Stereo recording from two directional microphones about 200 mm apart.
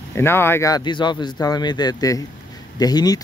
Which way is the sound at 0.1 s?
10° left (ahead or behind).